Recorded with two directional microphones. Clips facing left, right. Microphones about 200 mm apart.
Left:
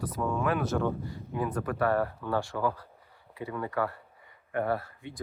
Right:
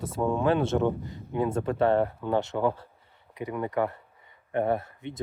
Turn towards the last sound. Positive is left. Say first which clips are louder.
# right 3 dB
turn(degrees=-20)  # may be behind; listen again after turning